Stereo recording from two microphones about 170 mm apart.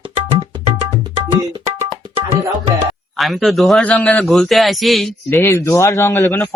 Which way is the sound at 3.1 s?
Centre (ahead or behind).